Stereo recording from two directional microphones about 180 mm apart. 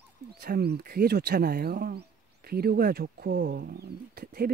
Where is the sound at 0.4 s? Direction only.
60° right (ahead or behind).